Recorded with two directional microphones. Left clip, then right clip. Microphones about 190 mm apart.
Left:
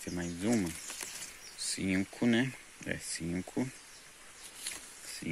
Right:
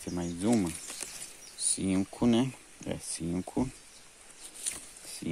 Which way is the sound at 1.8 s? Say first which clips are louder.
Right 2 dB; 15° right (ahead or behind).